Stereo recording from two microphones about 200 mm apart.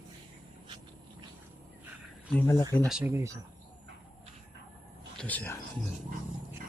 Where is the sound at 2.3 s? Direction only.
15° left (ahead or behind).